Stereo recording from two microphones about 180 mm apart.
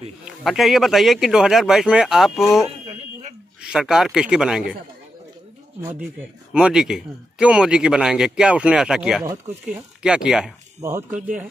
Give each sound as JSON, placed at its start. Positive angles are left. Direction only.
{"t": 0.2, "sound": "speech", "side_deg": 0}
{"t": 2.9, "sound": "a sound", "side_deg": -35}
{"t": 3.6, "sound": "speech", "side_deg": -5}
{"t": 5.8, "sound": "speech", "side_deg": -10}
{"t": 10.8, "sound": "speech", "side_deg": -15}